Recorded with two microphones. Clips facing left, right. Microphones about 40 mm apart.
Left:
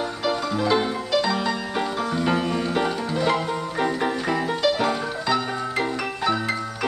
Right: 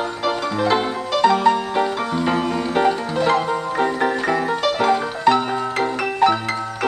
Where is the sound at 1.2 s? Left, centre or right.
Right.